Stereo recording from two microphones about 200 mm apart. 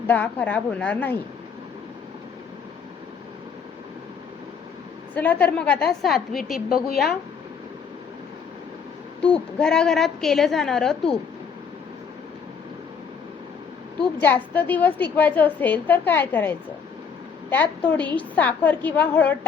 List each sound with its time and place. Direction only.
0.1 s a woman's voice: 10° left (ahead or behind)
5.1 s a woman's voice: 10° left (ahead or behind)
6.7 s a woman's voice: 45° left (ahead or behind)
6.9 s a woman's voice: centre (ahead or behind)
9.2 s a woman's voice: 5° left (ahead or behind)
14.2 s a woman's voice: 10° left (ahead or behind)